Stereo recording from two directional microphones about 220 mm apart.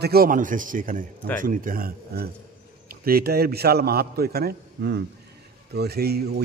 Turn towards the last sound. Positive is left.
turn(degrees=-45)  # may be behind; listen again after turning